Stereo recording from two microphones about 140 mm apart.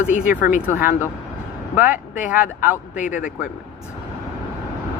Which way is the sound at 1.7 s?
10° right (ahead or behind).